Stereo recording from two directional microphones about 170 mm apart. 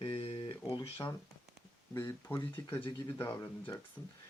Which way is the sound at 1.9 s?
15° left (ahead or behind).